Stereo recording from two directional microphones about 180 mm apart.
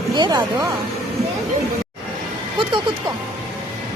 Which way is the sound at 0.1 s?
25° right (ahead or behind).